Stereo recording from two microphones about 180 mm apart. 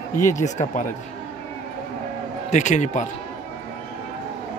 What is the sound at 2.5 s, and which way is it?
Speech, 40° left (ahead or behind).